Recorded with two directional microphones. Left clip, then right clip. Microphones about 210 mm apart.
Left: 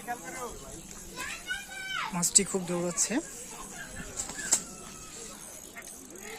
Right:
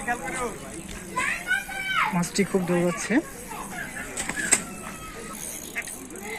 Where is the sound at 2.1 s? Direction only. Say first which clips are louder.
Right 4 dB; 15° left (ahead or behind).